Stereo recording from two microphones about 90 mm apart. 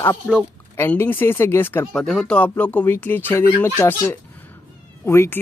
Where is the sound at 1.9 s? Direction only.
5° left (ahead or behind).